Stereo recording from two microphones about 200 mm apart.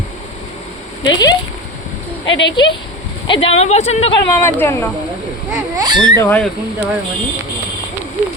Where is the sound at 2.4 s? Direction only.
25° left (ahead or behind).